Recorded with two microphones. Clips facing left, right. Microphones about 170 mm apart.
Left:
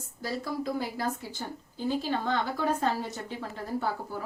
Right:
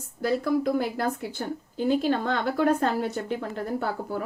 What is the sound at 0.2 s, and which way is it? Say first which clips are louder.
Speech: right 9 dB; 55° right (ahead or behind).